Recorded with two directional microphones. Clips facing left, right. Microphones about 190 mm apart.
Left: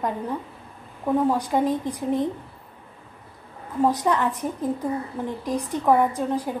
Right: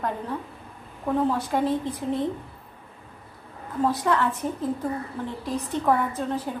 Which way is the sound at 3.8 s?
15° left (ahead or behind).